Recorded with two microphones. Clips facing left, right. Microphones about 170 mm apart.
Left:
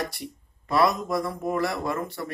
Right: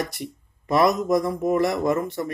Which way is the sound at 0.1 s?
20° right (ahead or behind).